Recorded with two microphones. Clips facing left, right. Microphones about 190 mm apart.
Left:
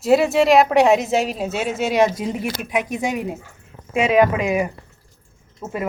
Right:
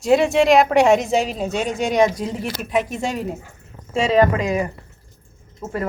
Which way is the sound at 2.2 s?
15° left (ahead or behind).